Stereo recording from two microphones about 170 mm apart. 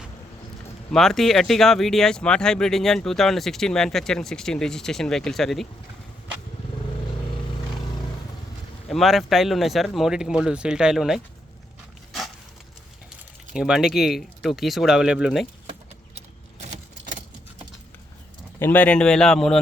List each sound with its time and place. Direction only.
0.9 s speech: centre (ahead or behind)
8.9 s speech: centre (ahead or behind)
13.5 s speech: 5° right (ahead or behind)
16.6 s keys jangling: 45° right (ahead or behind)
18.6 s speech: 10° left (ahead or behind)